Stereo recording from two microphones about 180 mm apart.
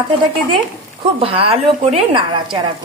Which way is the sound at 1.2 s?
30° right (ahead or behind).